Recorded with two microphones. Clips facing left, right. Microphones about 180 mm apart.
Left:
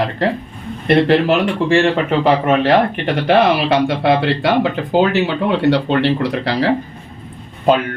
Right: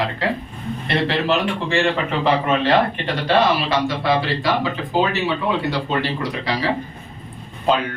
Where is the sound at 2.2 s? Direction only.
55° left (ahead or behind).